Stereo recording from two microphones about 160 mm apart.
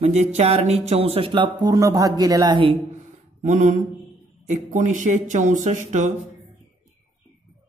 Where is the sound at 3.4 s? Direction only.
50° right (ahead or behind).